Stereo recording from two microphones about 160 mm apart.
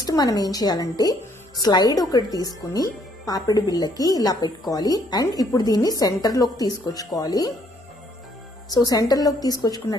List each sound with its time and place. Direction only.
0.0 s a woman's voice: 25° left (ahead or behind)
8.6 s a woman's voice: 25° left (ahead or behind)